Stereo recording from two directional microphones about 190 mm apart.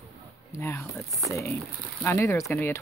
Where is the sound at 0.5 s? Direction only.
15° left (ahead or behind).